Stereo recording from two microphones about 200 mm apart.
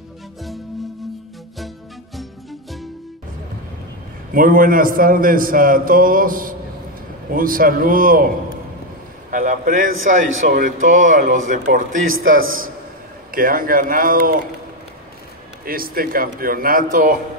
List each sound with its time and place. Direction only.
4.3 s a man's voice: 45° right (ahead or behind)
9.3 s a man's voice: 40° right (ahead or behind)
12.3 s a man's voice: 90° right
13.3 s a man's voice: 45° right (ahead or behind)
15.6 s a man's voice: 45° right (ahead or behind)